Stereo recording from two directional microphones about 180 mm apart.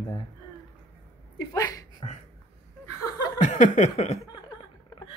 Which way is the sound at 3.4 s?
40° left (ahead or behind).